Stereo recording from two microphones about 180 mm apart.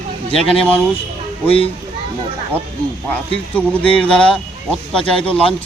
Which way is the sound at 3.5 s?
10° left (ahead or behind).